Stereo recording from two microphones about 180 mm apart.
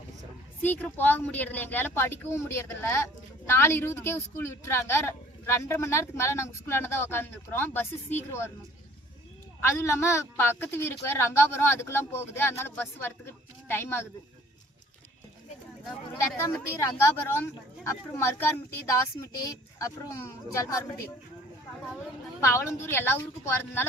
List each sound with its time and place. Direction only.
0.6 s a man's voice: 10° left (ahead or behind)
9.6 s a man's voice: 15° left (ahead or behind)
16.4 s a man's voice: 10° left (ahead or behind)
20.6 s a man's voice: 15° left (ahead or behind)
22.4 s a man's voice: 15° left (ahead or behind)